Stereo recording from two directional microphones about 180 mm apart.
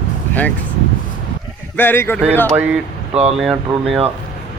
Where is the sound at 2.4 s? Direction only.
10° right (ahead or behind).